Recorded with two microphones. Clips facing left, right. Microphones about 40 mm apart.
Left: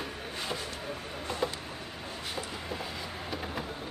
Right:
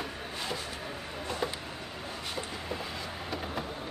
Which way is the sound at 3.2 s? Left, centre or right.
Centre.